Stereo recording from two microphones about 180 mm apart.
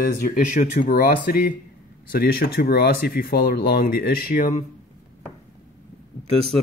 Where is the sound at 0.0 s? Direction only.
50° left (ahead or behind).